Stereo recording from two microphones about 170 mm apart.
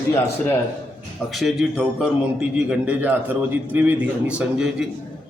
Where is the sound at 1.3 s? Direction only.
Centre (ahead or behind).